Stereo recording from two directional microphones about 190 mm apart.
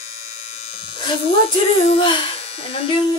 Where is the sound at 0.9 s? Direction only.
25° left (ahead or behind).